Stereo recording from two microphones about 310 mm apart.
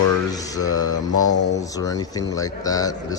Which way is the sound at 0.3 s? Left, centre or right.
Centre.